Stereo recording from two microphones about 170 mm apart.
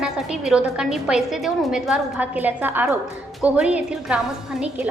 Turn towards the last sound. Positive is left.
turn(degrees=-5)  # may be behind; listen again after turning